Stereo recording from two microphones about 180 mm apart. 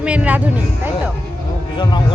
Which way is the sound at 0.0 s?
5° right (ahead or behind).